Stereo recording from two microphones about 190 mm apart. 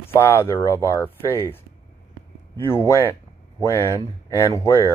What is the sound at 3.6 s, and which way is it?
Speech, 15° left (ahead or behind).